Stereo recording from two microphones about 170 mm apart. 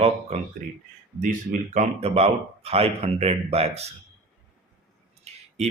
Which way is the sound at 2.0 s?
35° right (ahead or behind).